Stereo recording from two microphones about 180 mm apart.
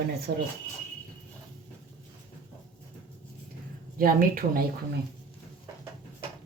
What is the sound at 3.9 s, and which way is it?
Speech, 55° right (ahead or behind).